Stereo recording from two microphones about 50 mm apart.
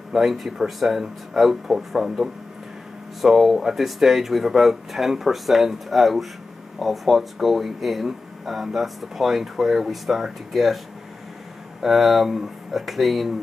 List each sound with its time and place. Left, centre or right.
0.1 s speech: centre
11.8 s speech: centre